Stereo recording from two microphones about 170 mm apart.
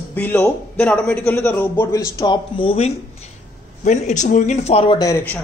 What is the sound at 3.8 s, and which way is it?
Speech, 45° left (ahead or behind).